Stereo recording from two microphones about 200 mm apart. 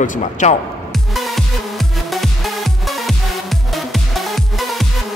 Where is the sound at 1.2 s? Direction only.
Centre (ahead or behind).